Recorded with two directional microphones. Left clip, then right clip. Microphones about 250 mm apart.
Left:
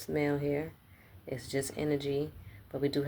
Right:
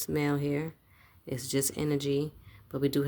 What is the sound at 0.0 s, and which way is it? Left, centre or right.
Speech, right.